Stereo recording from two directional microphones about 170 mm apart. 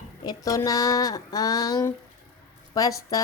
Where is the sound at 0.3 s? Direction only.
20° left (ahead or behind).